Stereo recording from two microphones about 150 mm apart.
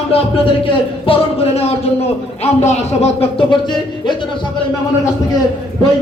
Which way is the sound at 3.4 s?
30° left (ahead or behind).